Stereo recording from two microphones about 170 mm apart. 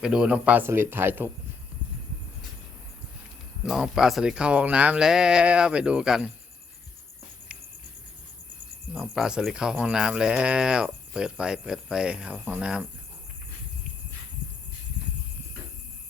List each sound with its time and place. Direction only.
0.0 s speech: 5° right (ahead or behind)
3.6 s speech: centre (ahead or behind)
8.9 s speech: 5° right (ahead or behind)